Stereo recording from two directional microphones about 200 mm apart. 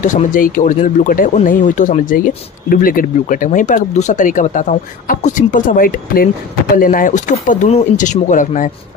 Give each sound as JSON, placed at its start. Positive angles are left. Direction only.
{"t": 0.0, "sound": "speech", "side_deg": 40}